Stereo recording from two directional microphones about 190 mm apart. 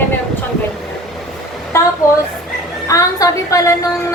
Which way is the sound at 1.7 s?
15° left (ahead or behind).